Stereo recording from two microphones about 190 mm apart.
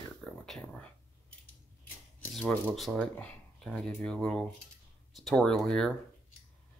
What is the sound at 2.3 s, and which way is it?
Speech, centre (ahead or behind).